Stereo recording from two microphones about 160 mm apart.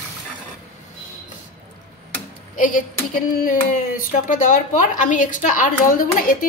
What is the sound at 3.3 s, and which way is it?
Speech, 65° left (ahead or behind).